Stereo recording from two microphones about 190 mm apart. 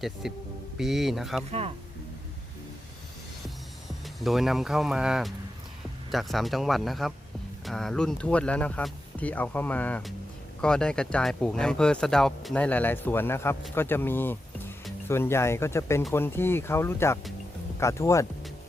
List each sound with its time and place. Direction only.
0.0 s speech: centre (ahead or behind)
1.5 s speech: 30° right (ahead or behind)
4.0 s speech: centre (ahead or behind); by 18.3 s 15° left (ahead or behind)